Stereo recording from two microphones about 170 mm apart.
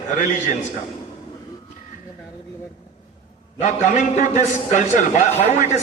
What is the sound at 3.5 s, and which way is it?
A man's voice, 45° left (ahead or behind).